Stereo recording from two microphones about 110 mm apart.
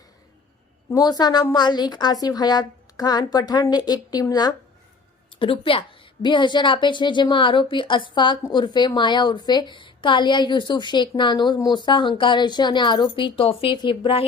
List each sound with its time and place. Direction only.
0.9 s a woman's voice: 35° left (ahead or behind)
5.4 s a woman's voice: 55° left (ahead or behind)